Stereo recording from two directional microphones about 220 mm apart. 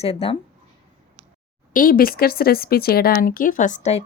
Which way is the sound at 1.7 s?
40° left (ahead or behind).